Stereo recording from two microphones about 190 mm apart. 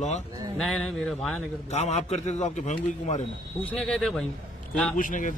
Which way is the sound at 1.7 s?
35° left (ahead or behind).